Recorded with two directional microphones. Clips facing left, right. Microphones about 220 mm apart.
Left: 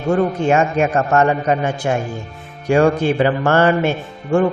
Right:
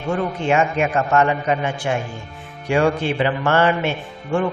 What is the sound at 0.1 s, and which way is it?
Speech, 45° left (ahead or behind).